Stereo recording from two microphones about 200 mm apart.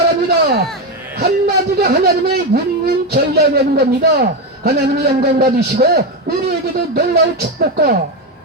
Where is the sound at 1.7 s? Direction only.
50° right (ahead or behind).